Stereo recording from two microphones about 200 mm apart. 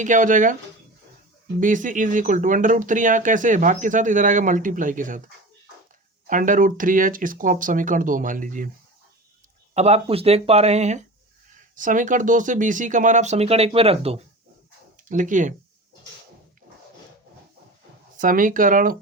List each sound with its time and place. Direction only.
0.0 s speech: 40° right (ahead or behind)
1.5 s speech: 40° right (ahead or behind)
6.2 s speech: 40° right (ahead or behind)
9.7 s speech: 30° right (ahead or behind)
15.1 s speech: 40° right (ahead or behind)
18.2 s speech: 40° right (ahead or behind)